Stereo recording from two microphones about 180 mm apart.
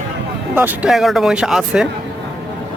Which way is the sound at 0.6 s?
5° right (ahead or behind).